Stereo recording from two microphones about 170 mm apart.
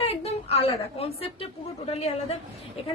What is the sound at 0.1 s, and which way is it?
A woman's voice, 35° left (ahead or behind).